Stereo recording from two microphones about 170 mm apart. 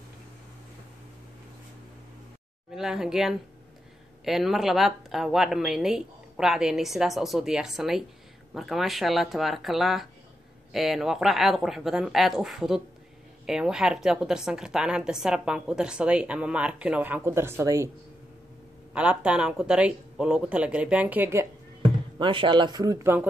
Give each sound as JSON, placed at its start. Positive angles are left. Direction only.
{"t": 2.7, "sound": "a woman's voice", "side_deg": -5}
{"t": 18.9, "sound": "speech", "side_deg": -5}
{"t": 22.2, "sound": "speech", "side_deg": -30}